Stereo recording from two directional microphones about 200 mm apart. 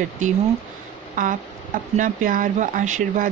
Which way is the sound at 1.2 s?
45° right (ahead or behind).